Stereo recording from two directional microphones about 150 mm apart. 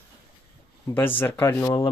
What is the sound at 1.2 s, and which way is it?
Speech, 15° left (ahead or behind).